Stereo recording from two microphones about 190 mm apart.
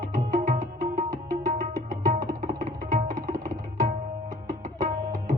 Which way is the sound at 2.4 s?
40° right (ahead or behind).